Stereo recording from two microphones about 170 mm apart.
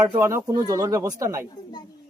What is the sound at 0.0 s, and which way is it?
A man's voice, 20° right (ahead or behind).